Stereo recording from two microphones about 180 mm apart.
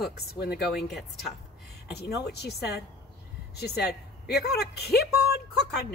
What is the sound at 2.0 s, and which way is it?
Speech, 65° left (ahead or behind).